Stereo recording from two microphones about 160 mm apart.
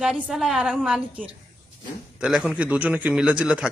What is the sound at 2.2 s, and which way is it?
A man's voice, centre (ahead or behind).